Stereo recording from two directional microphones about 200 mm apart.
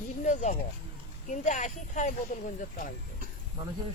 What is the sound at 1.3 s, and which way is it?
Speech, 40° left (ahead or behind).